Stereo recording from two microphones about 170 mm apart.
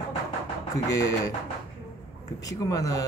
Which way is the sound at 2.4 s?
20° left (ahead or behind).